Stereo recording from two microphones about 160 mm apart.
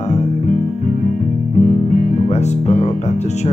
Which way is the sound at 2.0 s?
45° left (ahead or behind).